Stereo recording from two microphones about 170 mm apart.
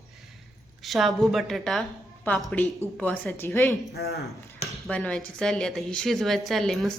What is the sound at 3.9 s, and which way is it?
Speech, 70° left (ahead or behind).